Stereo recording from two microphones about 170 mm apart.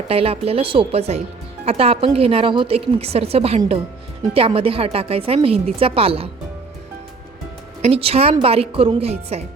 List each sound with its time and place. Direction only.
0.1 s a woman's voice: 35° right (ahead or behind)
7.8 s a woman's voice: 35° right (ahead or behind)